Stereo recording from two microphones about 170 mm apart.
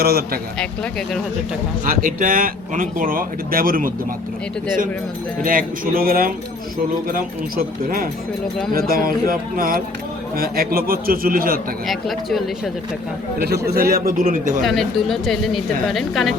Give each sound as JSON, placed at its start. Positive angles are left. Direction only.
{"t": 0.0, "sound": "speech", "side_deg": -65}
{"t": 0.6, "sound": "speech", "side_deg": 0}
{"t": 1.8, "sound": "speech", "side_deg": -55}
{"t": 5.4, "sound": "speech", "side_deg": -55}
{"t": 11.9, "sound": "speech", "side_deg": 0}
{"t": 13.4, "sound": "a man's voice", "side_deg": -70}
{"t": 13.9, "sound": "speech", "side_deg": -60}
{"t": 14.6, "sound": "speech", "side_deg": 0}